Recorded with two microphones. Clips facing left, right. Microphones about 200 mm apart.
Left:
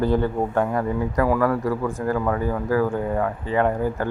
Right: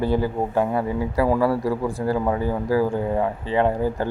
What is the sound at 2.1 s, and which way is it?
Speech, 20° right (ahead or behind).